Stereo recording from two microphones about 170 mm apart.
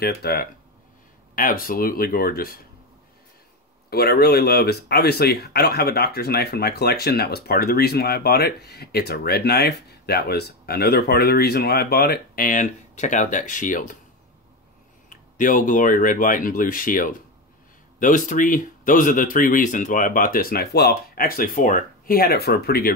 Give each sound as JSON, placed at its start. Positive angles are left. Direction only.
{"t": 0.0, "sound": "speech", "side_deg": 65}
{"t": 1.3, "sound": "speech", "side_deg": 55}
{"t": 3.9, "sound": "speech", "side_deg": 70}
{"t": 15.0, "sound": "speech", "side_deg": 50}